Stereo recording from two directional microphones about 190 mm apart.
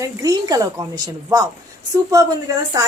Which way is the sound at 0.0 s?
20° right (ahead or behind).